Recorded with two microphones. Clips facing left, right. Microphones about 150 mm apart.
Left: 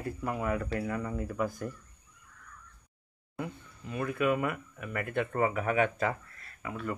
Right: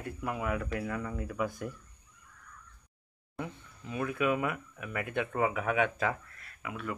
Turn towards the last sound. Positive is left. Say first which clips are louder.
# left 2 dB
turn(degrees=0)  # may be behind; listen again after turning